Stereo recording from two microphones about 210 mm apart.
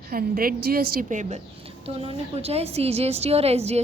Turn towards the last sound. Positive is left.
turn(degrees=-30)  # may be behind; listen again after turning